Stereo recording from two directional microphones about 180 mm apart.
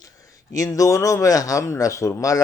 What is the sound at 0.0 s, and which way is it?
Speech, 20° left (ahead or behind).